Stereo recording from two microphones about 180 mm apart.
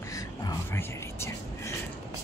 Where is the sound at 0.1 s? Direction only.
15° left (ahead or behind).